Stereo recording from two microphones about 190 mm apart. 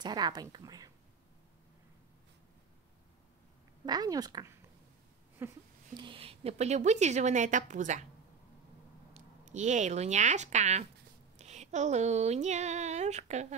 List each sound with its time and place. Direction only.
0.0 s a woman's voice: 20° right (ahead or behind)
3.8 s a woman's voice: 20° right (ahead or behind)
5.9 s a woman's voice: 30° right (ahead or behind)
9.1 s speech: 40° right (ahead or behind)